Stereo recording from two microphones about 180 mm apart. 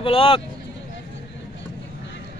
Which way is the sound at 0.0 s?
30° left (ahead or behind).